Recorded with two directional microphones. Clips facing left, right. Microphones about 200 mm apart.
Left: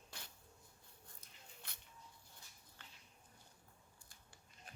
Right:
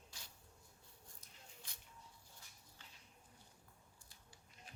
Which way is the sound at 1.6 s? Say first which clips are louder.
Left 2 dB; 60° left (ahead or behind).